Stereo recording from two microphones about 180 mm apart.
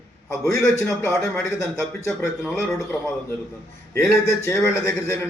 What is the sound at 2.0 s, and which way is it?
Speech, centre (ahead or behind).